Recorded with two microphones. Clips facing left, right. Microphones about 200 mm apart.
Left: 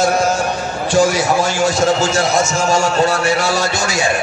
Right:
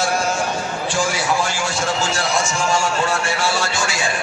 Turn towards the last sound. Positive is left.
turn(degrees=40)  # may be behind; listen again after turning